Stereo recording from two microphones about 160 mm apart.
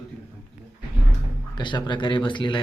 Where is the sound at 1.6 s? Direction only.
30° left (ahead or behind).